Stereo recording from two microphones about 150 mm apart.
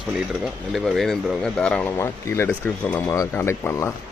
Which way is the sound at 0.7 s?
Centre (ahead or behind).